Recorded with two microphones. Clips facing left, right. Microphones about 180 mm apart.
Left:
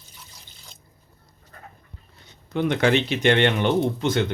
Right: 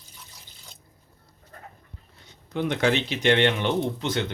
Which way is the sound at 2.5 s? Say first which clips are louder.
Left 3 dB; 60° left (ahead or behind).